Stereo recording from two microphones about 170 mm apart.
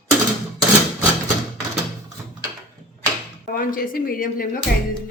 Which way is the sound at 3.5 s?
55° left (ahead or behind).